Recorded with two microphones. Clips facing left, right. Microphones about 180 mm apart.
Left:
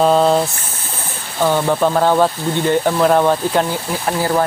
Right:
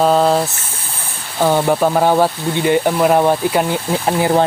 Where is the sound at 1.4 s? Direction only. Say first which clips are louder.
Right 1 dB; 15° right (ahead or behind).